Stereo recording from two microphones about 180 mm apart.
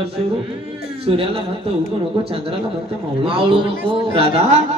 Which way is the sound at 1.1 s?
30° right (ahead or behind).